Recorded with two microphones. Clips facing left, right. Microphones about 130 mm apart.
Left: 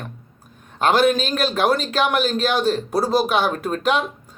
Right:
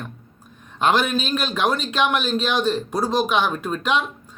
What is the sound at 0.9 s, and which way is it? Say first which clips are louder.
A man's voice: left 3 dB; 40° left (ahead or behind).